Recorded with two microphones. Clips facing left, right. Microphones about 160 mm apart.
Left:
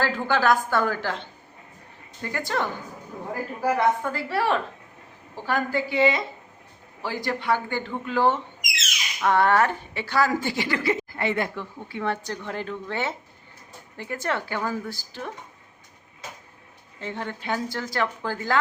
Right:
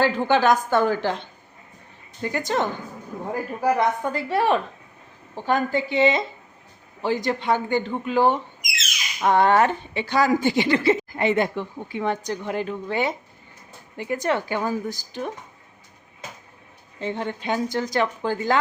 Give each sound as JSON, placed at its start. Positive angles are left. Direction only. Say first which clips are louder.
{"t": 0.0, "sound": "a woman's voice", "louder": "right 4 dB", "side_deg": -20}
{"t": 17.0, "sound": "speech", "louder": "right 5 dB", "side_deg": -20}